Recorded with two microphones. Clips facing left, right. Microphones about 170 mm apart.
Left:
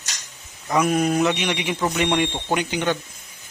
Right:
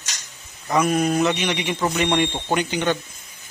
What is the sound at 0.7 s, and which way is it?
Speech, 5° left (ahead or behind).